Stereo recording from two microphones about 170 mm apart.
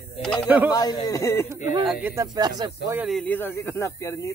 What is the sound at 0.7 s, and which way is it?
Speech, 25° left (ahead or behind).